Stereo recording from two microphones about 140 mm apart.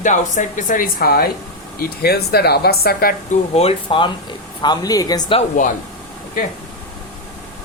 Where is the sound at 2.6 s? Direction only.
90° left.